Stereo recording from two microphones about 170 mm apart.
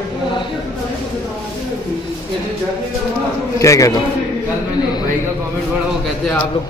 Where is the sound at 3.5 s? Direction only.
20° left (ahead or behind).